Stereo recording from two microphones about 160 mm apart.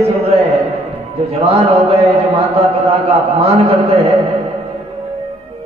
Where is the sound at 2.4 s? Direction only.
40° right (ahead or behind).